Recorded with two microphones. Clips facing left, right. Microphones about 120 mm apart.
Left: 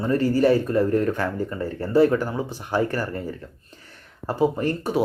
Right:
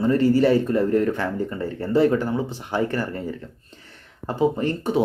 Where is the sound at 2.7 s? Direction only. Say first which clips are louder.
Left 1 dB; 45° left (ahead or behind).